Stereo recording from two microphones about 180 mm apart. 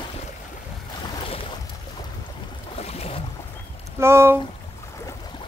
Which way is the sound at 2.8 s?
35° left (ahead or behind).